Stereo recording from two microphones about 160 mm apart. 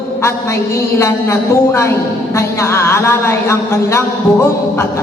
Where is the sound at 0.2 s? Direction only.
15° left (ahead or behind).